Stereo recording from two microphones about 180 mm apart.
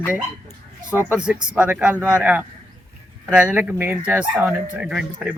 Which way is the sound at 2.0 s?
15° left (ahead or behind).